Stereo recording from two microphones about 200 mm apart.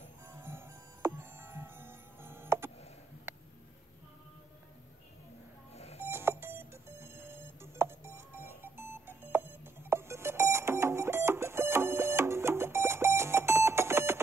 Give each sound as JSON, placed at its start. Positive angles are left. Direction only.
{"t": 0.3, "sound": "music", "side_deg": -10}
{"t": 5.9, "sound": "music", "side_deg": -10}